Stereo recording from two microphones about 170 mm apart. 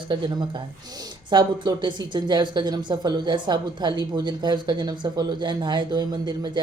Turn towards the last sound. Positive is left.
turn(degrees=-25)  # may be behind; listen again after turning